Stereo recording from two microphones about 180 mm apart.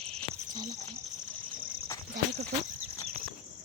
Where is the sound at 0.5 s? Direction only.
20° right (ahead or behind).